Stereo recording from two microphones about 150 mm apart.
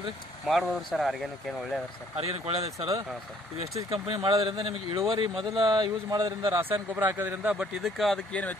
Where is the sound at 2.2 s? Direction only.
45° right (ahead or behind).